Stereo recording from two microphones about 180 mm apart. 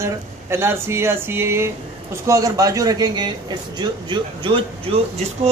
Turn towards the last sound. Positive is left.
turn(degrees=-35)  # may be behind; listen again after turning